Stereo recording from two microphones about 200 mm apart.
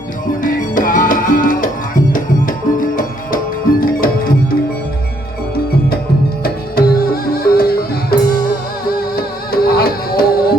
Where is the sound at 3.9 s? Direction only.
45° left (ahead or behind).